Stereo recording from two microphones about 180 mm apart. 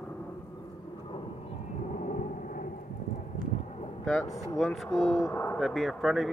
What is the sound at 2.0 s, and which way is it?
Vehicle, 45° left (ahead or behind).